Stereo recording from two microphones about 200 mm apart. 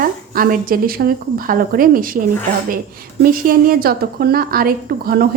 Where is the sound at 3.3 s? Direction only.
45° right (ahead or behind).